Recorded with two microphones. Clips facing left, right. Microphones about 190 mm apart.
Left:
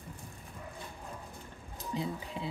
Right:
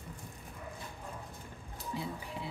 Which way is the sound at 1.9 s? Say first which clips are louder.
Left 4 dB; 20° left (ahead or behind).